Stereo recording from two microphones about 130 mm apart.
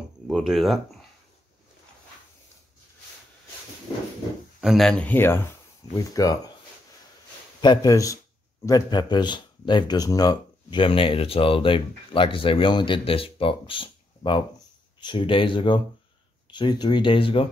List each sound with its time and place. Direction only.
0.3 s speech: centre (ahead or behind)
4.6 s speech: centre (ahead or behind); by 5.6 s 20° left (ahead or behind)
5.9 s speech: 30° left (ahead or behind)
7.6 s speech: 30° left (ahead or behind)
10.8 s speech: 45° left (ahead or behind)